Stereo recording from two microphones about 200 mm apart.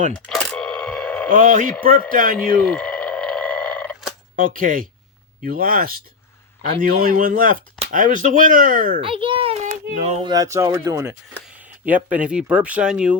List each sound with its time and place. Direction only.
0.3 s a sound: 5° left (ahead or behind)
1.3 s speech: 45° right (ahead or behind)
2.6 s a sound: 5° left (ahead or behind)
4.4 s speech: 45° right (ahead or behind)
9.0 s a child's voice: 25° right (ahead or behind)
10.3 s speech: 15° right (ahead or behind)